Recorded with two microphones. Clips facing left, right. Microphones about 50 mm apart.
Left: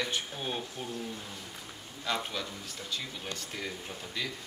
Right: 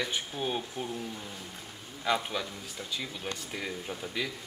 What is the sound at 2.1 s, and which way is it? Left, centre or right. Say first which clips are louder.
Speech: right 4 dB; centre.